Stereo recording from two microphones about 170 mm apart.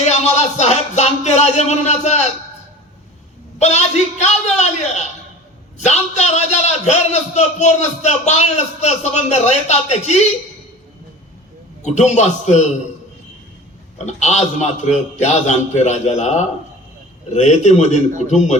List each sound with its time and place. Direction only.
0.0 s a man's voice: 40° left (ahead or behind)
3.6 s a man's voice: 40° left (ahead or behind)
11.8 s a man's voice: 40° left (ahead or behind)
14.0 s a man's voice: 40° left (ahead or behind)